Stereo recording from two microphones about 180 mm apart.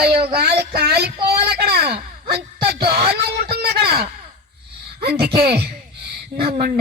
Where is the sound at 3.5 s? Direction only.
60° right (ahead or behind).